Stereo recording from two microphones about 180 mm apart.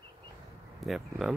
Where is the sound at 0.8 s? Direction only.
Centre (ahead or behind).